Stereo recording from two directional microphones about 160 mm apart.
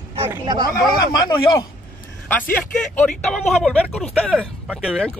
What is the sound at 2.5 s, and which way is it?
Speech, 10° left (ahead or behind).